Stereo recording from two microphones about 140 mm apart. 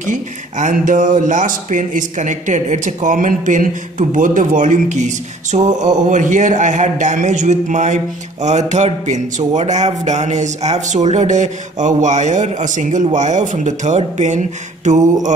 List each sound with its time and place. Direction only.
0.0 s speech: 65° right (ahead or behind)